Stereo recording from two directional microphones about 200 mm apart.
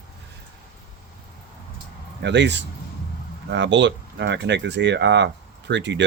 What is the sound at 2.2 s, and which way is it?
Speech, 60° right (ahead or behind).